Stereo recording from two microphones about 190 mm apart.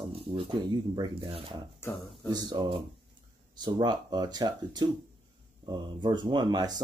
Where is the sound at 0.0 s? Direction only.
25° right (ahead or behind).